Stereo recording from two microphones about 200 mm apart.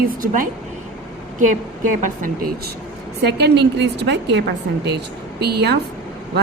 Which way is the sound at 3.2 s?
60° right (ahead or behind).